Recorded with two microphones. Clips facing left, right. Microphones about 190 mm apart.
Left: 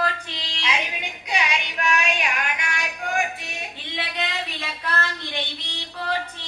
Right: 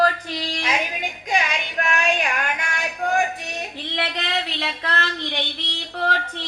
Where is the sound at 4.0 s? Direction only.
70° right (ahead or behind).